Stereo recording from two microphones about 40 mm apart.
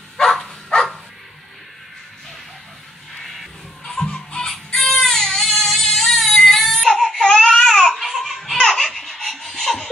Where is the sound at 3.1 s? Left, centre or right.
Centre.